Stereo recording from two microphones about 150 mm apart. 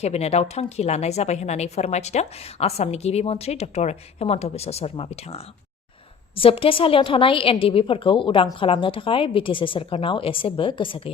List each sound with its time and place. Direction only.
0.0 s a woman's voice: 45° left (ahead or behind)